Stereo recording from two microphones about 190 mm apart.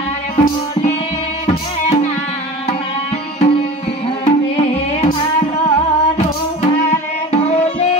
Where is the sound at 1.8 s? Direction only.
35° left (ahead or behind).